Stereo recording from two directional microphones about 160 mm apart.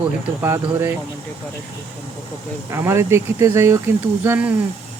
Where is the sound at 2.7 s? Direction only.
15° right (ahead or behind).